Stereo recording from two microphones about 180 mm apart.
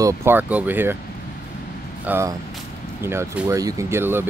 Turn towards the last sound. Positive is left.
turn(degrees=-15)  # may be behind; listen again after turning